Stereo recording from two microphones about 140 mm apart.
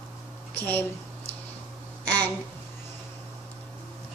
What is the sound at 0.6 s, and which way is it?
Speech, 15° left (ahead or behind).